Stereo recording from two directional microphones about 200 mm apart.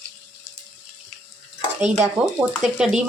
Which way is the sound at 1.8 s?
35° right (ahead or behind).